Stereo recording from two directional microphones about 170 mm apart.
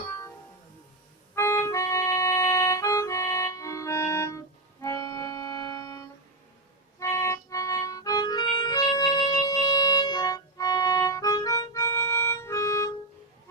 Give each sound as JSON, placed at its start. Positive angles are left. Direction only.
{"t": 1.4, "sound": "music", "side_deg": 15}